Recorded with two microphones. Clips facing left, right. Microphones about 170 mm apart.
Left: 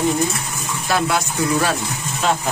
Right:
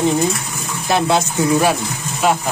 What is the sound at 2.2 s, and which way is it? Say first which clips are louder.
Speech: right 3 dB; 10° right (ahead or behind).